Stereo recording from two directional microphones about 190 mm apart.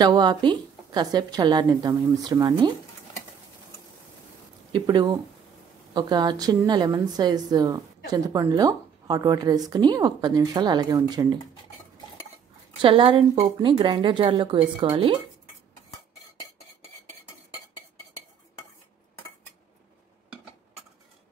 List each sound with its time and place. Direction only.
0.0 s a woman's voice: 20° right (ahead or behind)
4.7 s a woman's voice: 20° right (ahead or behind)
12.8 s a woman's voice: 25° right (ahead or behind)